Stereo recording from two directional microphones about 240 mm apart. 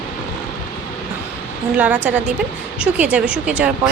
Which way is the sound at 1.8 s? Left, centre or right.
Centre.